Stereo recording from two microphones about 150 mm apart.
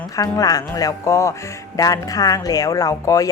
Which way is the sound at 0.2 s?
25° left (ahead or behind).